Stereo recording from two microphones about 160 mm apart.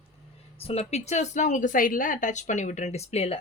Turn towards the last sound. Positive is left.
turn(degrees=40)  # may be behind; listen again after turning